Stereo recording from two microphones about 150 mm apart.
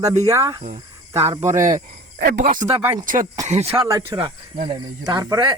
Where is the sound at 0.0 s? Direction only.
20° right (ahead or behind).